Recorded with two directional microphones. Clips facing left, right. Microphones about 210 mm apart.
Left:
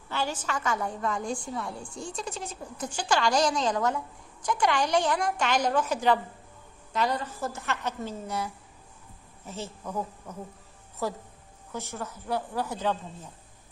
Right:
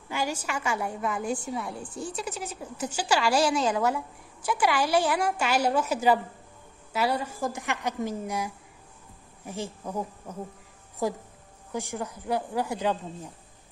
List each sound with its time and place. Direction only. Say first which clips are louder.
0.1 s a woman's voice: right 1 dB; 10° right (ahead or behind)
11.0 s a woman's voice: right 3 dB; 15° right (ahead or behind)